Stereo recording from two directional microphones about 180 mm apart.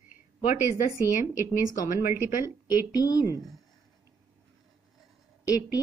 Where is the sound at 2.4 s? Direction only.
20° left (ahead or behind).